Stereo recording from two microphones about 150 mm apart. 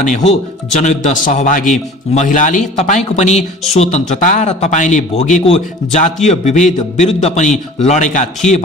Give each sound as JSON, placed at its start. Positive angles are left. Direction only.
{"t": 0.0, "sound": "a man's voice", "side_deg": 50}